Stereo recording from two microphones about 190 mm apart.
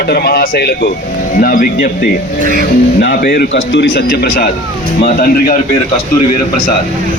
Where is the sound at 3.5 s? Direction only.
70° left (ahead or behind); by 5.5 s 50° left (ahead or behind).